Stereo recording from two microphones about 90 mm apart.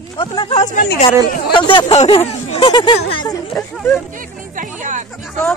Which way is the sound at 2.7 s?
55° left (ahead or behind).